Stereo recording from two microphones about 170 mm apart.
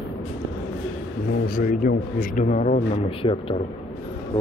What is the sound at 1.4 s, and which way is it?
Speech, 55° left (ahead or behind).